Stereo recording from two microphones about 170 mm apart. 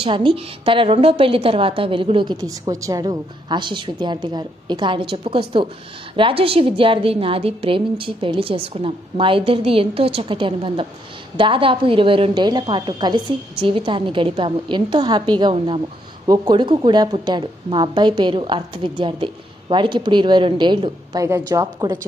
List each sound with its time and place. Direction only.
0.0 s a woman's voice: 30° right (ahead or behind)